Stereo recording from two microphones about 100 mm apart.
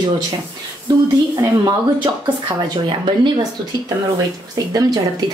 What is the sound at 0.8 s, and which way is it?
Speech, 40° right (ahead or behind).